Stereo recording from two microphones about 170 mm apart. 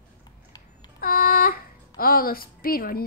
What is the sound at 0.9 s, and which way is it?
Speech, 60° left (ahead or behind).